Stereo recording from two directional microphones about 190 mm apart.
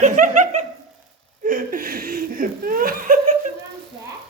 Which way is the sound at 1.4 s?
45° right (ahead or behind).